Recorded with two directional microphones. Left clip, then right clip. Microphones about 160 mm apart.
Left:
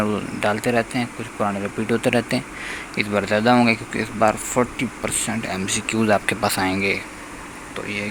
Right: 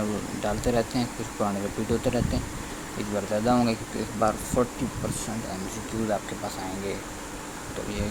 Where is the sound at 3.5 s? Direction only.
10° left (ahead or behind).